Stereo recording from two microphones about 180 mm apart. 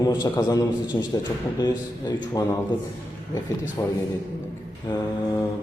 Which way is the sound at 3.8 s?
15° left (ahead or behind).